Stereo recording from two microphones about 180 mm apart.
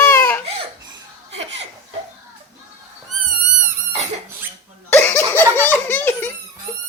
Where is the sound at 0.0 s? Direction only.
10° left (ahead or behind).